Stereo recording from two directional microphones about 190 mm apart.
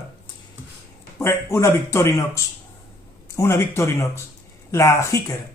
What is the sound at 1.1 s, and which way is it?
Speech, 15° left (ahead or behind).